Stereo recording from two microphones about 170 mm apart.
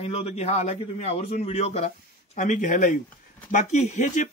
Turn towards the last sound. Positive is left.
turn(degrees=45)  # may be behind; listen again after turning